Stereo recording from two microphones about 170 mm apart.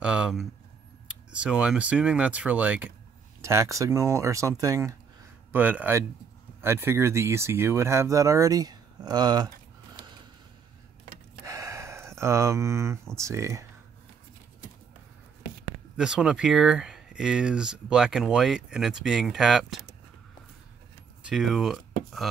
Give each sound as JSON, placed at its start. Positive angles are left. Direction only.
{"t": 0.0, "sound": "a sound", "side_deg": -5}
{"t": 1.0, "sound": "speech", "side_deg": -5}
{"t": 11.4, "sound": "a sound", "side_deg": -20}
{"t": 13.1, "sound": "speech", "side_deg": -15}
{"t": 16.0, "sound": "speech", "side_deg": -5}
{"t": 21.2, "sound": "speech", "side_deg": 0}